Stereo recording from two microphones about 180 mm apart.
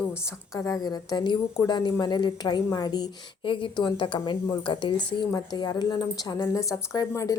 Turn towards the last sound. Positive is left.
turn(degrees=20)  # may be behind; listen again after turning